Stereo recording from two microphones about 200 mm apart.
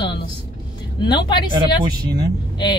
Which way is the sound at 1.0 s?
20° left (ahead or behind).